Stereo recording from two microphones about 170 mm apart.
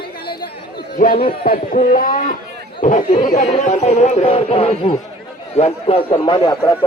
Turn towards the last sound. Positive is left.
turn(degrees=25)  # may be behind; listen again after turning